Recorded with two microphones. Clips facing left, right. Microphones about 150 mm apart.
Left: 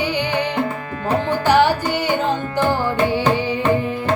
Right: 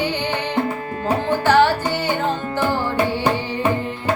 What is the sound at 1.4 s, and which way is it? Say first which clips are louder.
Music: even; 15° left (ahead or behind).